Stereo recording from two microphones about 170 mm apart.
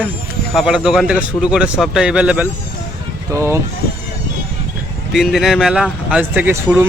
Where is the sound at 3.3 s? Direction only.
15° right (ahead or behind).